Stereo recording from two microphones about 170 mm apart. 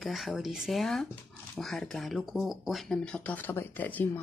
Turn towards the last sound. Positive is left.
turn(degrees=10)  # may be behind; listen again after turning